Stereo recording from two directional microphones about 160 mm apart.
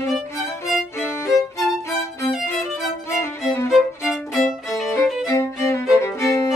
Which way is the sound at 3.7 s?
Centre (ahead or behind).